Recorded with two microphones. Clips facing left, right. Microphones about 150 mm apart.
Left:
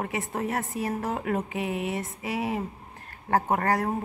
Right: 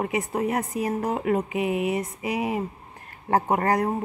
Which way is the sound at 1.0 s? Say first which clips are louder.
Right 4 dB; 5° right (ahead or behind).